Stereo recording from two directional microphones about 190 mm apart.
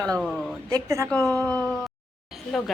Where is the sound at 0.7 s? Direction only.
15° right (ahead or behind).